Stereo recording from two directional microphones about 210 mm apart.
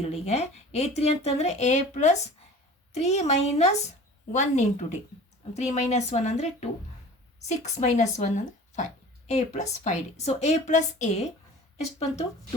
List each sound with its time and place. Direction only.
0.0 s speech: 30° left (ahead or behind)